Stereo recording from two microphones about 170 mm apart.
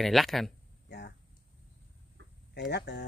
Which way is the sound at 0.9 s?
90° left.